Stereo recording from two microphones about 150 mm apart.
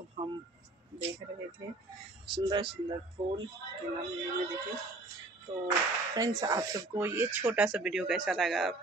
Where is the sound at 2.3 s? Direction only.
30° right (ahead or behind).